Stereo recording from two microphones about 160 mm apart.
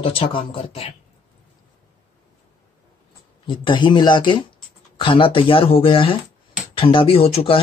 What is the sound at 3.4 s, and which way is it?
Speech, 30° left (ahead or behind).